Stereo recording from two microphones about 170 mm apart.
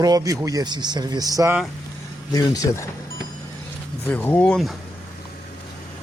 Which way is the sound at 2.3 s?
20° left (ahead or behind).